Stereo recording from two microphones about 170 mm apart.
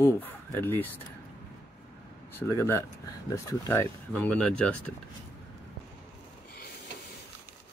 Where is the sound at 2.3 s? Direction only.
15° left (ahead or behind).